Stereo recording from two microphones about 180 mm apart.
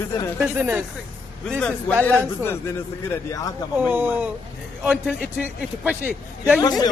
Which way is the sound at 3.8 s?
10° right (ahead or behind).